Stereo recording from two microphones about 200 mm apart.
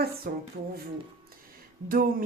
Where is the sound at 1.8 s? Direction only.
45° right (ahead or behind).